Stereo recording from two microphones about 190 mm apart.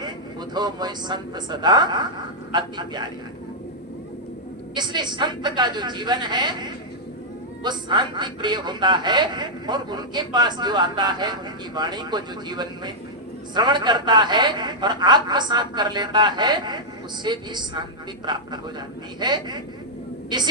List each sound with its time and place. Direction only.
0.5 s speech: 20° right (ahead or behind)
4.7 s speech: 25° right (ahead or behind)